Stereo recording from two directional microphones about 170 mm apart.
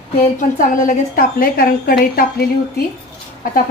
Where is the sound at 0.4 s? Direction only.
50° left (ahead or behind).